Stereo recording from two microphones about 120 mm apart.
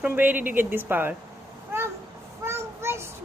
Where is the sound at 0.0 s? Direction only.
15° right (ahead or behind).